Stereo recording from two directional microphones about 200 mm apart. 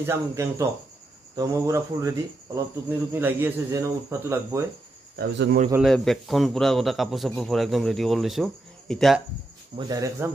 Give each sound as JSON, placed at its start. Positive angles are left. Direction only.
{"t": 0.0, "sound": "speech", "side_deg": -15}
{"t": 5.1, "sound": "speech", "side_deg": -50}
{"t": 5.9, "sound": "speech", "side_deg": 0}
{"t": 9.8, "sound": "speech", "side_deg": -20}